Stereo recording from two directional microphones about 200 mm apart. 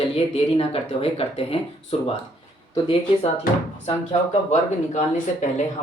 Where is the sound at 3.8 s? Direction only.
30° left (ahead or behind).